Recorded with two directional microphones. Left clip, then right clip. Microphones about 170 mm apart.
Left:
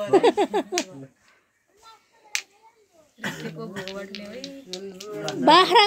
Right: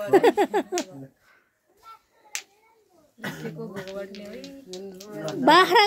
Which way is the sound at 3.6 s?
10° left (ahead or behind).